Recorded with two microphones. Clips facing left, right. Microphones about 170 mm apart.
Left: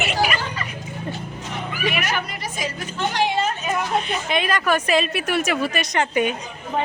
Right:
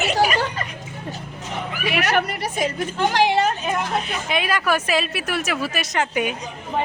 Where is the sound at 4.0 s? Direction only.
5° right (ahead or behind).